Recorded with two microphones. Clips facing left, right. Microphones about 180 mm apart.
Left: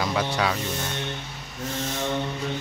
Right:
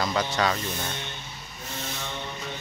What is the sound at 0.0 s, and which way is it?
Speech, 5° left (ahead or behind).